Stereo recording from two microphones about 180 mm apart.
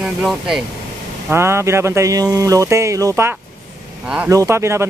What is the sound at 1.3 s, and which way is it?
Speech, 15° right (ahead or behind).